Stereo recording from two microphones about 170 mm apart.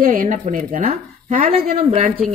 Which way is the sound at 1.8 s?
40° right (ahead or behind).